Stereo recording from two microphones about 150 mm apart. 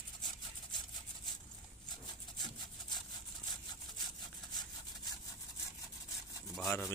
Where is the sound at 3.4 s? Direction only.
30° left (ahead or behind).